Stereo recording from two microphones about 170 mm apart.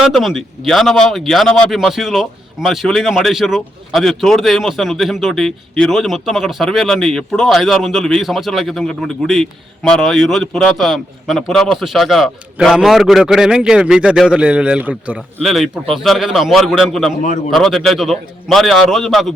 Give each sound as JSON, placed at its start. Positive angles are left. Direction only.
{"t": 0.0, "sound": "speech", "side_deg": 0}
{"t": 17.2, "sound": "a man's voice", "side_deg": 50}
{"t": 17.5, "sound": "speech", "side_deg": 0}